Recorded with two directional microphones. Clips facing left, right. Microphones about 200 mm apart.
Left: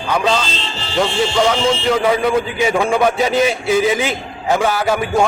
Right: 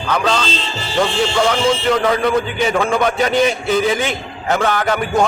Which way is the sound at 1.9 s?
5° left (ahead or behind).